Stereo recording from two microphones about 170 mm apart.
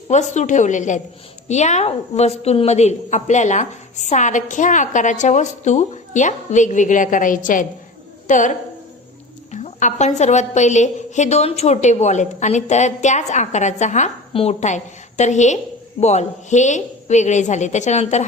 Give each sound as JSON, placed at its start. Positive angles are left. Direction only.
{"t": 0.1, "sound": "a woman's voice", "side_deg": 45}